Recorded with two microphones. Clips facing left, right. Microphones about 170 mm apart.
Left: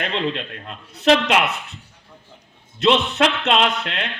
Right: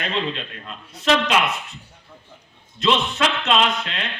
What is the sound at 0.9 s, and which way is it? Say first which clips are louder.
Speech: left 3 dB; 65° left (ahead or behind).